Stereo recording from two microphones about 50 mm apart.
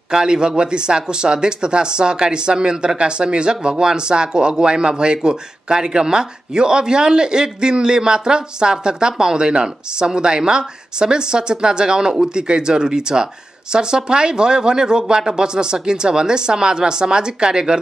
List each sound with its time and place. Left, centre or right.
0.1 s speech: centre